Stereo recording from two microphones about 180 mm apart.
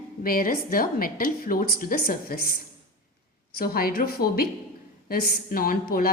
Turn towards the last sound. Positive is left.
turn(degrees=55)  # may be behind; listen again after turning